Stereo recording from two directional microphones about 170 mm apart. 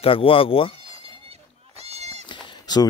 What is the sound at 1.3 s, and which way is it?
Bleat, 40° right (ahead or behind).